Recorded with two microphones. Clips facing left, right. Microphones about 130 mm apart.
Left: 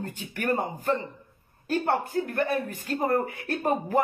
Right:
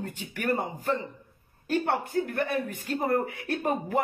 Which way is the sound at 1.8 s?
40° left (ahead or behind).